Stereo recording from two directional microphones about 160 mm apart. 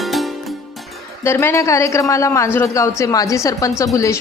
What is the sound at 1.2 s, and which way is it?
A woman's voice, 15° left (ahead or behind).